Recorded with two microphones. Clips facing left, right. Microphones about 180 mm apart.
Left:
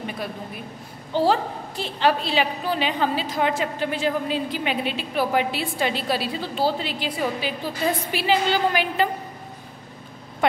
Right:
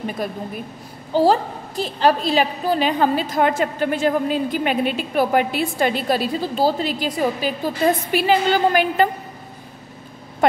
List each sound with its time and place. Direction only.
1.1 s a woman's voice: 40° right (ahead or behind)